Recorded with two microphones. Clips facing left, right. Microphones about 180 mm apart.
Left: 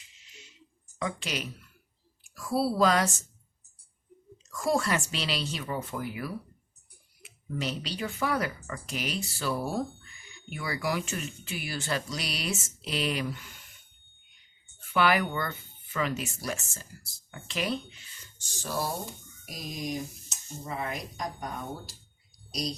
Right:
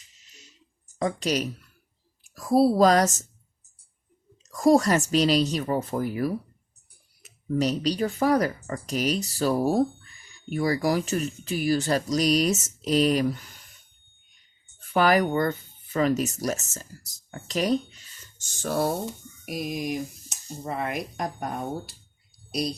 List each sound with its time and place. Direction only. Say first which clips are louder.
0.2 s a sound: left 1 dB; 40° right (ahead or behind)
0.9 s speech: right 8 dB; 40° right (ahead or behind)
4.4 s speech: right 9 dB; 40° right (ahead or behind)
14.8 s speech: right 5 dB; 40° right (ahead or behind)
18.6 s speech: right 7 dB; 60° right (ahead or behind)